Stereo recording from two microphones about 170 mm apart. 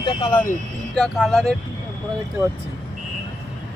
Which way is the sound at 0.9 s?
Centre (ahead or behind).